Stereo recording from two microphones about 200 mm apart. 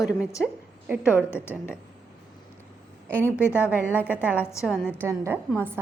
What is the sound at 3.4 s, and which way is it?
Speech, 10° left (ahead or behind).